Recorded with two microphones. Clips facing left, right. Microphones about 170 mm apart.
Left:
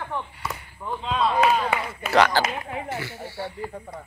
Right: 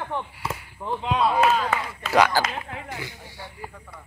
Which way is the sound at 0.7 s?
20° right (ahead or behind).